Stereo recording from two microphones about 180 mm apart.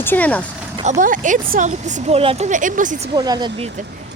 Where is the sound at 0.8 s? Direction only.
45° right (ahead or behind).